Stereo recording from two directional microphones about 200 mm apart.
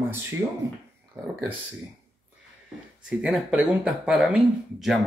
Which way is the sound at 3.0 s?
5° right (ahead or behind).